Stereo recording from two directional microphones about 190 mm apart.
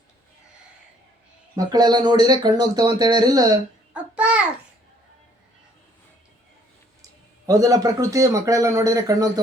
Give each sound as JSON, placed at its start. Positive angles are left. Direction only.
{"t": 1.5, "sound": "speech", "side_deg": -20}
{"t": 3.9, "sound": "babbling", "side_deg": -5}
{"t": 7.4, "sound": "speech", "side_deg": -15}